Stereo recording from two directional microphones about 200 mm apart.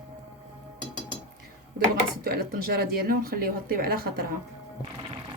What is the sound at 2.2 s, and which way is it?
Speech, 50° right (ahead or behind).